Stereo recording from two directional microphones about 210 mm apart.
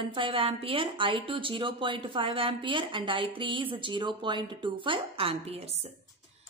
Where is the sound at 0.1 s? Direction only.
25° right (ahead or behind).